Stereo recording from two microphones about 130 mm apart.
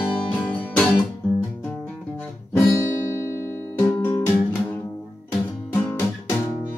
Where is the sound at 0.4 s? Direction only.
15° left (ahead or behind).